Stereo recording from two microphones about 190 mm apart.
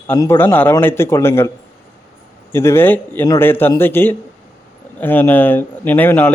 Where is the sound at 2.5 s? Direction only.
15° left (ahead or behind).